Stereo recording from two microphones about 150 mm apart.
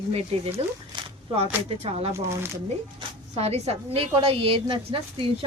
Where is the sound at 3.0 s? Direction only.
35° right (ahead or behind).